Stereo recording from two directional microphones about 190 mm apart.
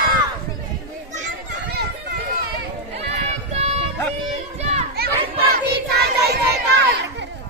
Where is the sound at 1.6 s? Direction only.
60° right (ahead or behind).